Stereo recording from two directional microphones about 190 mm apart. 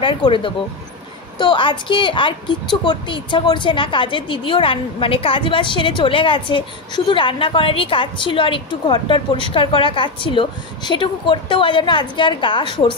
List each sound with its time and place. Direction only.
0.0 s a woman's voice: 25° left (ahead or behind)